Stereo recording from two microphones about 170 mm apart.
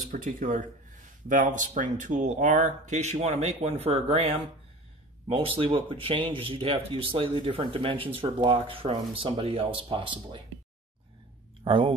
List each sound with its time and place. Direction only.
0.1 s speech: 55° right (ahead or behind); by 10.4 s 30° right (ahead or behind)
11.6 s speech: 30° right (ahead or behind)